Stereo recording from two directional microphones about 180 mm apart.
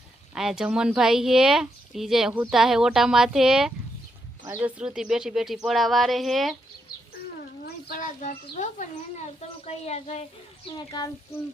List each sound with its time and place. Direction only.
0.3 s speech: 5° right (ahead or behind)
7.9 s speech: 50° left (ahead or behind)